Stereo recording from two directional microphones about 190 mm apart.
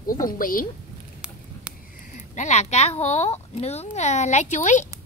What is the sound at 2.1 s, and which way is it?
Speech, 40° left (ahead or behind).